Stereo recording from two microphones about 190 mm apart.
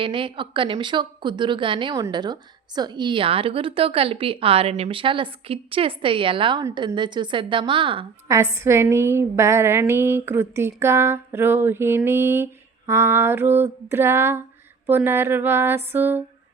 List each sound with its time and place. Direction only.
0.0 s a woman's voice: 25° right (ahead or behind)
8.3 s a woman's voice: 15° right (ahead or behind)